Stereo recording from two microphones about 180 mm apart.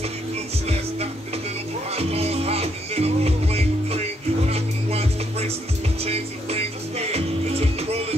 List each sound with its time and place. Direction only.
2.0 s music: 35° right (ahead or behind)